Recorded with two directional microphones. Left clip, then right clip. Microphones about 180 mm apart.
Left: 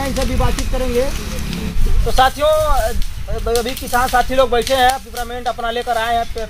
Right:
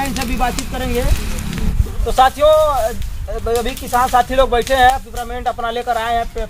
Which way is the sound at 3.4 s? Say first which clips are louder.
Even; 5° left (ahead or behind).